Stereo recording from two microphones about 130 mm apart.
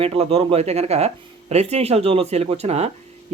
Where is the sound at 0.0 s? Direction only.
50° right (ahead or behind).